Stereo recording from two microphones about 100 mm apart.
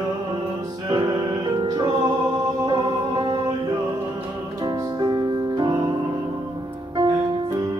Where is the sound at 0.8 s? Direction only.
40° right (ahead or behind).